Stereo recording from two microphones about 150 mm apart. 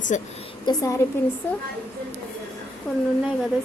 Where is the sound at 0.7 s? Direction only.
30° left (ahead or behind).